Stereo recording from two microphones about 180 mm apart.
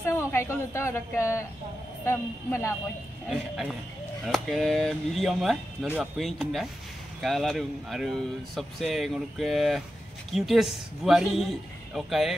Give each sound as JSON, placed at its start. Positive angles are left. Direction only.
{"t": 0.3, "sound": "speech", "side_deg": 15}
{"t": 3.3, "sound": "speech", "side_deg": 0}